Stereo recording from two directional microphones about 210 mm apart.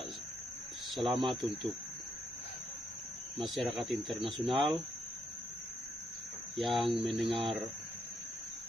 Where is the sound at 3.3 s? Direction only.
Centre (ahead or behind).